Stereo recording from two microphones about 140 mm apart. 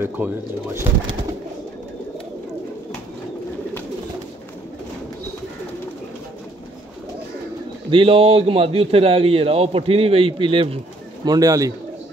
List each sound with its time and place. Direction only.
0.2 s speech: 15° right (ahead or behind)
7.9 s a man's voice: 40° right (ahead or behind)
11.2 s speech: 25° right (ahead or behind)